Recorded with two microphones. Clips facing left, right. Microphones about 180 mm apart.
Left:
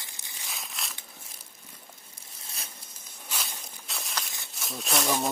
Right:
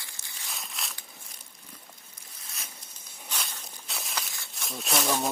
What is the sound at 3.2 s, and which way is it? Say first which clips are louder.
Walk: even; centre (ahead or behind).